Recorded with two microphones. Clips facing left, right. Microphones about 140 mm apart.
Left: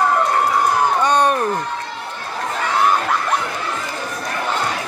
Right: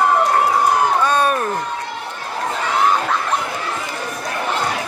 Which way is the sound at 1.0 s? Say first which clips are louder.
Left 1 dB; 15° left (ahead or behind).